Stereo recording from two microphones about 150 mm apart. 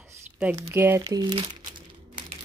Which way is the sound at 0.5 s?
15° right (ahead or behind).